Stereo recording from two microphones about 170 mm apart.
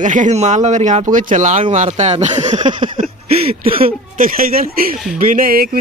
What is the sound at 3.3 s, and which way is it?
Speech, 35° right (ahead or behind).